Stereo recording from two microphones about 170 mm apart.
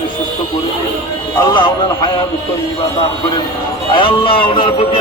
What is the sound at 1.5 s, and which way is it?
Speech, 25° left (ahead or behind).